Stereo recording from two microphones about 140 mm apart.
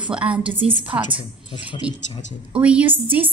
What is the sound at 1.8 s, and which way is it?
A woman's voice, 10° right (ahead or behind).